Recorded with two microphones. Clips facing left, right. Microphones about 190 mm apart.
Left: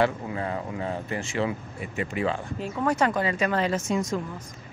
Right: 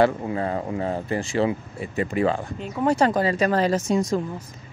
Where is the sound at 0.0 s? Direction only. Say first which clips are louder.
Right 5 dB; 35° right (ahead or behind).